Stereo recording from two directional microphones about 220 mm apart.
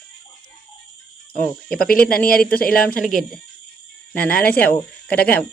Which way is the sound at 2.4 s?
40° left (ahead or behind).